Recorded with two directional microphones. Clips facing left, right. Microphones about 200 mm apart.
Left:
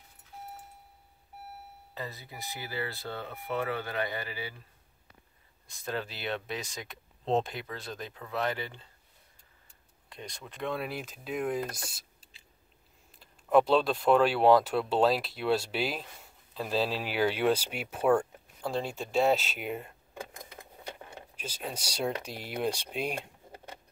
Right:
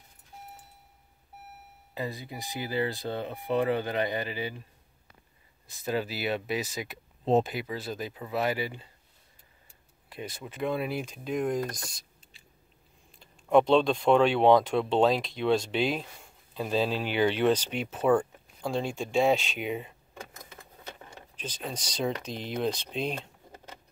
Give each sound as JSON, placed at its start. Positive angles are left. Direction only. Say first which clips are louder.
{"t": 2.0, "sound": "speech", "louder": "right 6 dB", "side_deg": -15}
{"t": 5.7, "sound": "speech", "louder": "right 5 dB", "side_deg": -5}
{"t": 10.0, "sound": "speech", "louder": "right 5 dB", "side_deg": -5}
{"t": 13.1, "sound": "speech", "louder": "right 2 dB", "side_deg": 5}
{"t": 21.4, "sound": "speech", "louder": "right 2 dB", "side_deg": 10}